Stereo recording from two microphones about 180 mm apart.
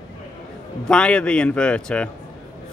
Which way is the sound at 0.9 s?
5° left (ahead or behind).